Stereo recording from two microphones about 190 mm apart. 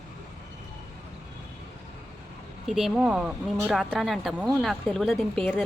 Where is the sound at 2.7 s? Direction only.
5° right (ahead or behind).